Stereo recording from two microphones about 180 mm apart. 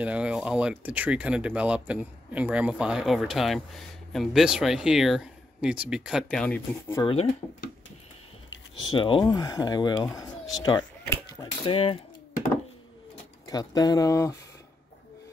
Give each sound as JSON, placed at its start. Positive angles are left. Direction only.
{"t": 0.0, "sound": "speech", "side_deg": -5}
{"t": 6.4, "sound": "speech", "side_deg": 5}
{"t": 7.0, "sound": "speech", "side_deg": 30}
{"t": 8.9, "sound": "speech", "side_deg": 25}
{"t": 13.5, "sound": "speech", "side_deg": 20}